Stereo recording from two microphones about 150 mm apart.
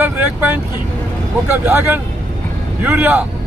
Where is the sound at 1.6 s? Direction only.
15° right (ahead or behind).